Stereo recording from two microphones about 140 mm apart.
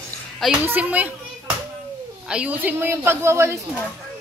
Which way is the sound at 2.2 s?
5° right (ahead or behind).